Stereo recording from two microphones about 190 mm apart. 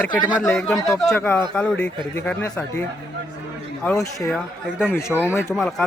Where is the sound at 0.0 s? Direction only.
5° left (ahead or behind).